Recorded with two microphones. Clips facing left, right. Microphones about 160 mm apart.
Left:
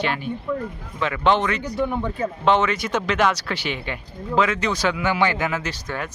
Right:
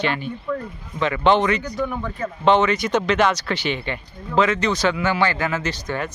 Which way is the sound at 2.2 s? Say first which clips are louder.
Right 3 dB; 5° left (ahead or behind).